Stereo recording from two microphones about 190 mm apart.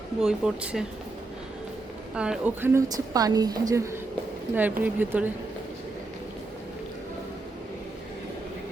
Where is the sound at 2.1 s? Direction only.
5° right (ahead or behind).